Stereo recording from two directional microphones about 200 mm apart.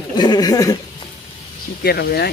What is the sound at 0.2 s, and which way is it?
Speech, 20° left (ahead or behind).